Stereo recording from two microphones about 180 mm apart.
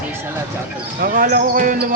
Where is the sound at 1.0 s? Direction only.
50° right (ahead or behind).